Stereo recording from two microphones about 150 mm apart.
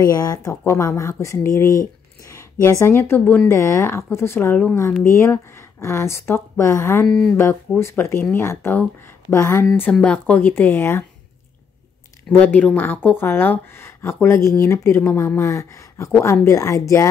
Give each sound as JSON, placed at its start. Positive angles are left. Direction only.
{"t": 0.0, "sound": "speech", "side_deg": 25}
{"t": 7.1, "sound": "speech", "side_deg": 0}
{"t": 7.3, "sound": "speech", "side_deg": 15}
{"t": 12.5, "sound": "speech", "side_deg": 10}